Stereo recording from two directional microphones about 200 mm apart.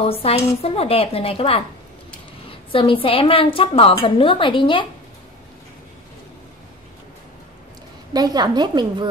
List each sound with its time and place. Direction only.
0.0 s a woman's voice: 30° left (ahead or behind)
2.7 s a woman's voice: 25° left (ahead or behind)
8.1 s a woman's voice: 20° right (ahead or behind)